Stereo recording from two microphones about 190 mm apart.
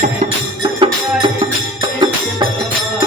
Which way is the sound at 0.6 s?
25° right (ahead or behind).